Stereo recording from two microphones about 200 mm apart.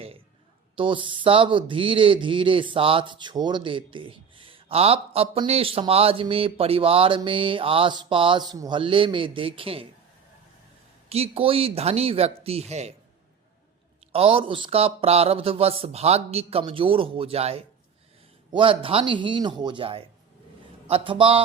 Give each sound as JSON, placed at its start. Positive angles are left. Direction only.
{"t": 0.8, "sound": "speech", "side_deg": -25}
{"t": 11.1, "sound": "speech", "side_deg": -30}
{"t": 14.1, "sound": "speech", "side_deg": -25}